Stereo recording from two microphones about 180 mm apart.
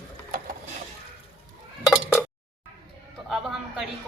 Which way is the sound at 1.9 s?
5° right (ahead or behind).